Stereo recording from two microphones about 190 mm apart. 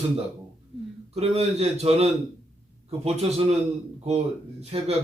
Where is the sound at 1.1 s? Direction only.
35° right (ahead or behind).